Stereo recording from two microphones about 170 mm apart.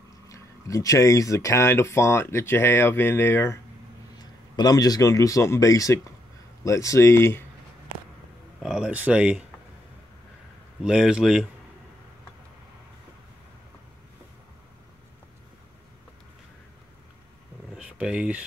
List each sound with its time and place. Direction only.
0.3 s speech: 20° left (ahead or behind)
8.6 s speech: 5° right (ahead or behind)
10.8 s speech: 5° right (ahead or behind)
17.7 s a sound: 5° right (ahead or behind)